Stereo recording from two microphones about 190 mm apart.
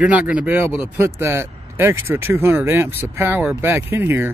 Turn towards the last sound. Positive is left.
turn(degrees=-10)  # may be behind; listen again after turning